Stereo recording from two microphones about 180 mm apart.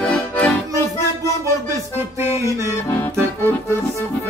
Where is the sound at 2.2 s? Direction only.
15° right (ahead or behind).